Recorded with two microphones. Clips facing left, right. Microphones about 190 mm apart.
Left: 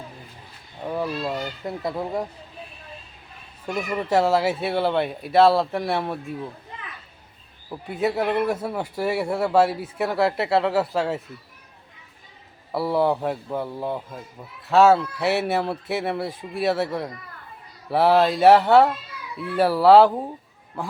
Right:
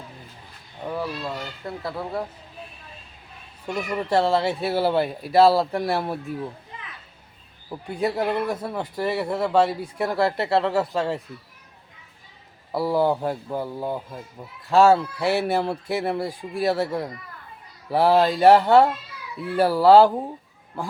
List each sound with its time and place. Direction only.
0.9 s speech: 15° left (ahead or behind)
3.7 s speech: 5° left (ahead or behind)
7.7 s speech: centre (ahead or behind)
12.7 s speech: centre (ahead or behind)